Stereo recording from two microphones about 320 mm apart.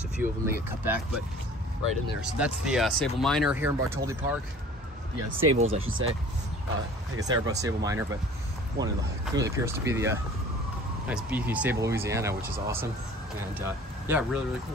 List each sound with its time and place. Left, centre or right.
0.2 s speech: centre
2.3 s speech: centre
5.2 s speech: right
7.2 s speech: centre
8.8 s speech: right
9.3 s speech: centre
13.6 s speech: centre